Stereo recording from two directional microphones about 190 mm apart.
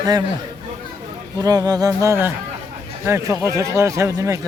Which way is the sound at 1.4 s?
20° right (ahead or behind).